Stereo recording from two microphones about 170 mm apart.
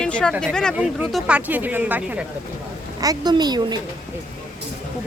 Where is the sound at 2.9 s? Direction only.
25° right (ahead or behind).